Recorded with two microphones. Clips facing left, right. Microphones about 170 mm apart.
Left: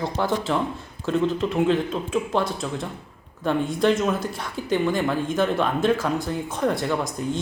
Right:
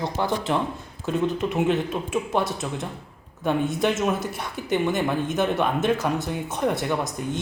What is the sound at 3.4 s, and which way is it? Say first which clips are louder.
Speech: left 2 dB; 15° right (ahead or behind).